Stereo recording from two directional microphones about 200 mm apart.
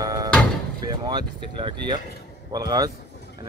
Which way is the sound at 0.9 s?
20° right (ahead or behind).